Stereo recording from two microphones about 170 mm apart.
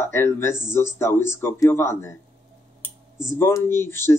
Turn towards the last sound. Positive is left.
turn(degrees=15)  # may be behind; listen again after turning